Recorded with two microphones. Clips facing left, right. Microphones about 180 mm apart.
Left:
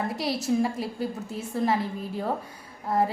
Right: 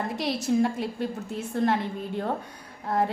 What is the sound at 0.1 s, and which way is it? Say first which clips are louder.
A woman's voice: right 1 dB; 5° left (ahead or behind).